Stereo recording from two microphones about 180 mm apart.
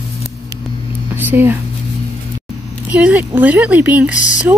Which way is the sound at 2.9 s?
10° right (ahead or behind).